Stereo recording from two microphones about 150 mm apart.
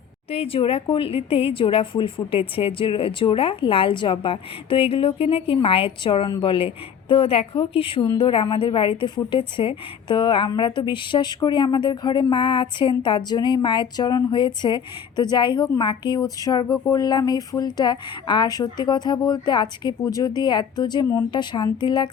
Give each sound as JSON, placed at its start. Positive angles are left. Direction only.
{"t": 0.3, "sound": "a woman's voice", "side_deg": 40}
{"t": 8.0, "sound": "speech", "side_deg": 25}
{"t": 8.3, "sound": "a woman's voice", "side_deg": 35}